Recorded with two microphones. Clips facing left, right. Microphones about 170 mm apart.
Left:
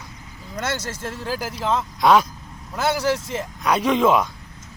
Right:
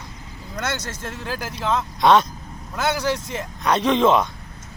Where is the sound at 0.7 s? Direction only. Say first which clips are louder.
Left 1 dB; 30° left (ahead or behind).